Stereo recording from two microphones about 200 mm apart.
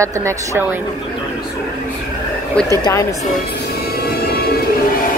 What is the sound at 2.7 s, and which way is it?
Speech, 15° left (ahead or behind).